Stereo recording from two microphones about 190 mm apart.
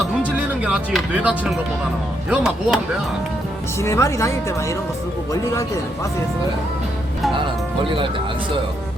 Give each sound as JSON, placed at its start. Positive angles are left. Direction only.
{"t": 0.3, "sound": "speech", "side_deg": -5}
{"t": 3.8, "sound": "speech", "side_deg": 15}
{"t": 7.9, "sound": "speech", "side_deg": -25}